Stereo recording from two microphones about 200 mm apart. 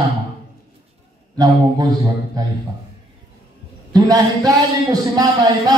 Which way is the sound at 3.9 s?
20° right (ahead or behind).